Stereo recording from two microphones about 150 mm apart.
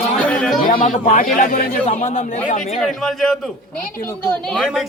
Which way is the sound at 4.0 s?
15° left (ahead or behind).